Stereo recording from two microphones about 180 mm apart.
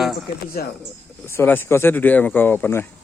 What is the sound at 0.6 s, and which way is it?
Speech, 55° left (ahead or behind).